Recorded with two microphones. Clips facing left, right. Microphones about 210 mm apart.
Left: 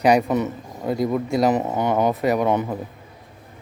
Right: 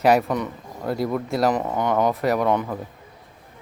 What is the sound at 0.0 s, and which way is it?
Speech, centre (ahead or behind).